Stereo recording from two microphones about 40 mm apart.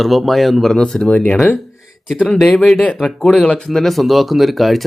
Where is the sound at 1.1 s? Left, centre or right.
Left.